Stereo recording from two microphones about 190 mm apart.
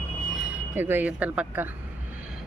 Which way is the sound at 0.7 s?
10° right (ahead or behind).